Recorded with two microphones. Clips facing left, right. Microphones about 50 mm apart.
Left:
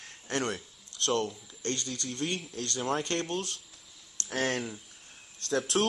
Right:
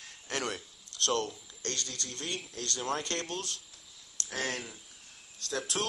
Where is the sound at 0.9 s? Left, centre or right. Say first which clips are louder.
Left 2 dB; centre.